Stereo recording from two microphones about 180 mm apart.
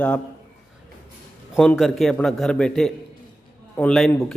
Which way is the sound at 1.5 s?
Centre (ahead or behind).